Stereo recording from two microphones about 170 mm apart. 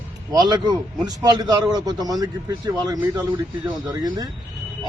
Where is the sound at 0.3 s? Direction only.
25° right (ahead or behind).